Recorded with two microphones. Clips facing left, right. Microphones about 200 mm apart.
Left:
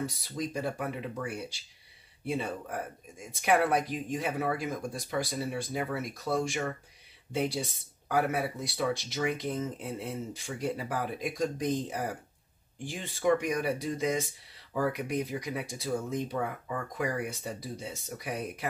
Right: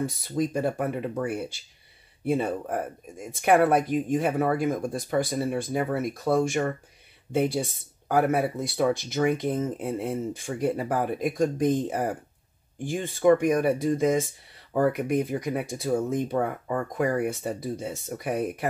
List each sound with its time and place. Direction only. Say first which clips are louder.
0.0 s speech: right 7 dB; 50° right (ahead or behind)